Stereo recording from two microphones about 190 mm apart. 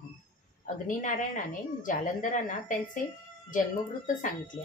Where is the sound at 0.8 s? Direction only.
40° left (ahead or behind).